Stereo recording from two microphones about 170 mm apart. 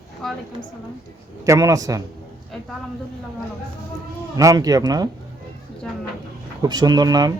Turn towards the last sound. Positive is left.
turn(degrees=-20)  # may be behind; listen again after turning